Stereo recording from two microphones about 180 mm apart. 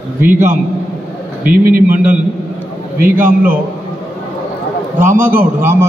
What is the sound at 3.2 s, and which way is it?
Speech, 10° right (ahead or behind).